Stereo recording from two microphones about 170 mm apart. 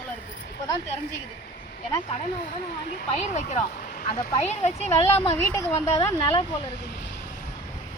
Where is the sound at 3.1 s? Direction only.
45° left (ahead or behind).